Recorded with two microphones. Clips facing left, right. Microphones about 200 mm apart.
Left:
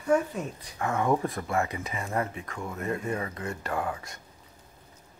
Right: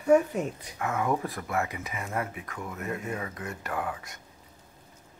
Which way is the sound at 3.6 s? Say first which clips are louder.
Left 1 dB; 25° left (ahead or behind).